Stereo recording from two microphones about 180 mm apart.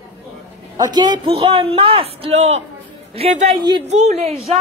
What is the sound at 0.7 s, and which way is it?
A man's voice, 25° right (ahead or behind).